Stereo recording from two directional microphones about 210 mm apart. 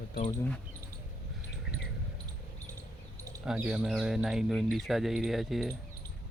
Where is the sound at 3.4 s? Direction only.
5° right (ahead or behind).